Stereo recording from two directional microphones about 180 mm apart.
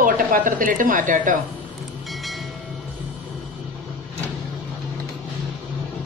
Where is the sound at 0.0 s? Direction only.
50° right (ahead or behind).